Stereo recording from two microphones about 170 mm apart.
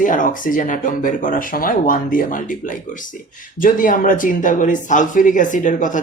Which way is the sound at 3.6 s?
55° left (ahead or behind).